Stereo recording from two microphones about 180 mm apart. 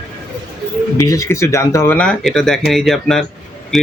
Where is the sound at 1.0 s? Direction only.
15° left (ahead or behind).